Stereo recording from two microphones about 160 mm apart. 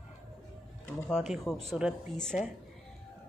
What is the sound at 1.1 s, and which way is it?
Speech, centre (ahead or behind).